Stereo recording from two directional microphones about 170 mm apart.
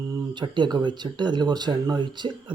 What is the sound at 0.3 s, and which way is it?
Speech, 25° right (ahead or behind).